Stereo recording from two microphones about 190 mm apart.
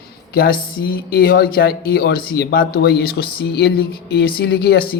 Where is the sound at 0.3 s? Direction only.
50° left (ahead or behind).